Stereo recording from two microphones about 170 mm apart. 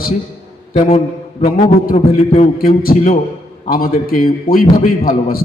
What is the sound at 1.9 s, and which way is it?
Speech, 40° left (ahead or behind).